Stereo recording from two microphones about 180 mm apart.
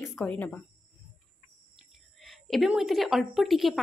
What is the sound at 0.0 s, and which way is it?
Speech, 10° left (ahead or behind).